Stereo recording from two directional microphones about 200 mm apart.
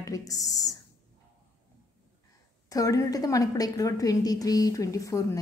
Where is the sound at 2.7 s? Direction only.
15° left (ahead or behind).